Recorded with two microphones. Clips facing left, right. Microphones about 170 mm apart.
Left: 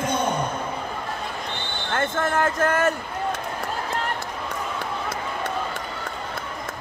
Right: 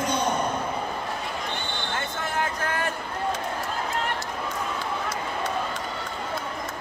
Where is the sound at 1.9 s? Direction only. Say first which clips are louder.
Left 8 dB; 50° left (ahead or behind).